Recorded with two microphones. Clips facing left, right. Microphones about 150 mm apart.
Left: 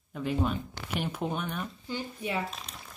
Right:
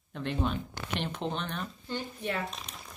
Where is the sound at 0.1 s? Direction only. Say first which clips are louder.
Left 2 dB; 5° left (ahead or behind).